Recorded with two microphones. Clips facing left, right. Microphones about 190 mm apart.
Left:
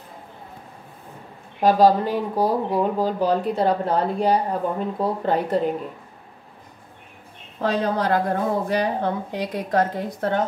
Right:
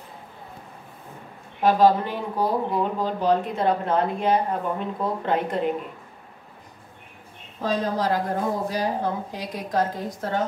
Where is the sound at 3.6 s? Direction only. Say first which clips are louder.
Left 2 dB; 35° left (ahead or behind).